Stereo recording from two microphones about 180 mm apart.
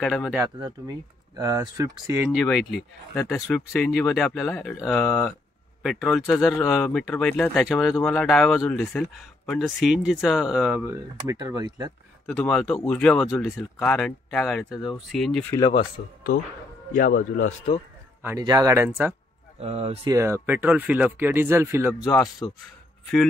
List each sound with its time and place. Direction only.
0.0 s speech: centre (ahead or behind)
0.6 s speech: 25° right (ahead or behind)
2.3 s speech: centre (ahead or behind)
5.8 s a sound: centre (ahead or behind)
6.0 s speech: centre (ahead or behind)
10.9 s speech: 15° right (ahead or behind)
12.3 s speech: centre (ahead or behind)
13.6 s speech: 10° left (ahead or behind)
15.5 s speech: 25° left (ahead or behind)
16.3 s speech: 50° left (ahead or behind)
18.4 s speech: 20° right (ahead or behind)
19.6 s speech: 35° right (ahead or behind)
20.1 s speech: 15° right (ahead or behind)
22.4 s a man's voice: 15° left (ahead or behind)